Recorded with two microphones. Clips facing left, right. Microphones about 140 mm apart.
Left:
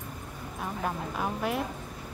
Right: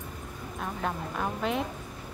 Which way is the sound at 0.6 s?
5° left (ahead or behind).